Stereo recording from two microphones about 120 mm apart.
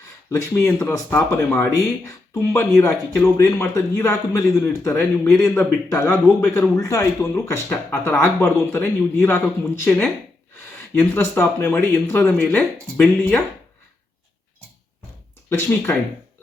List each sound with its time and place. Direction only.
0.0 s speech: 20° left (ahead or behind)
15.4 s speech: 20° left (ahead or behind)